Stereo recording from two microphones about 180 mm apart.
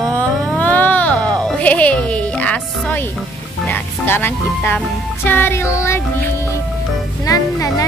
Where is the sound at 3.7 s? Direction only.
10° left (ahead or behind).